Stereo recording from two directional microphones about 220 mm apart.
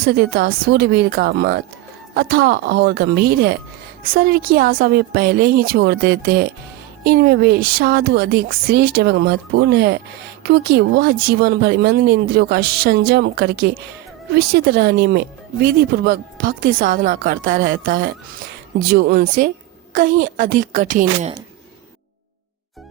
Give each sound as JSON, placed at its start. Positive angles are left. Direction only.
{"t": 0.0, "sound": "speech", "side_deg": -45}